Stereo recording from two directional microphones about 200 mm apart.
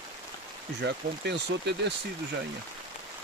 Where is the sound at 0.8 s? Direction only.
60° right (ahead or behind).